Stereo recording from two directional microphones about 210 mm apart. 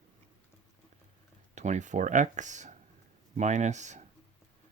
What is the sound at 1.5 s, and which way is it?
Speech, 35° right (ahead or behind).